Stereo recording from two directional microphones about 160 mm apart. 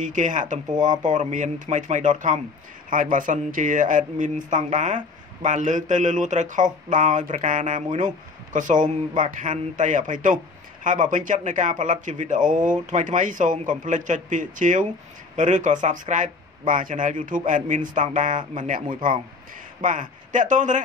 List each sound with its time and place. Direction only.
0.0 s speech: 50° right (ahead or behind)